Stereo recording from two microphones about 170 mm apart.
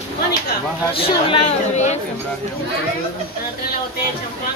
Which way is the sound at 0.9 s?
35° left (ahead or behind).